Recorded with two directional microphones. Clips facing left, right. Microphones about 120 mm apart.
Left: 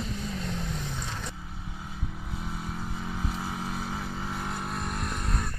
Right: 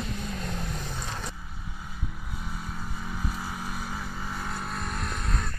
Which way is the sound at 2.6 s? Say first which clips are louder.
Left 2 dB; 25° left (ahead or behind).